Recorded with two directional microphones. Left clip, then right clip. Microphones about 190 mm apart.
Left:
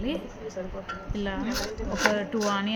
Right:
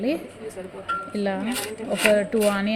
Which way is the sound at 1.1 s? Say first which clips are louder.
Right 4 dB; 20° right (ahead or behind).